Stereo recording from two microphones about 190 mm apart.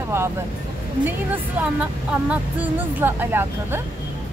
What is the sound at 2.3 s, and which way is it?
Speech, 10° right (ahead or behind).